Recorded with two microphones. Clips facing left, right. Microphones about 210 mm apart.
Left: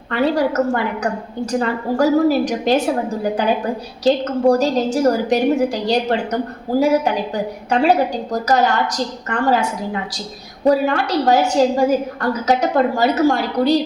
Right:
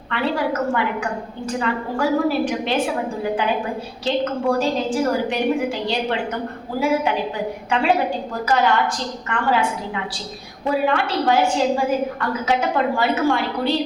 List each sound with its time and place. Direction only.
0.1 s a woman's voice: 40° left (ahead or behind)
4.0 s a woman's voice: 40° left (ahead or behind)